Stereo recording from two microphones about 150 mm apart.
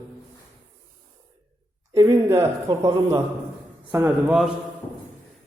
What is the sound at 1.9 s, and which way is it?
A woman's voice, 20° right (ahead or behind).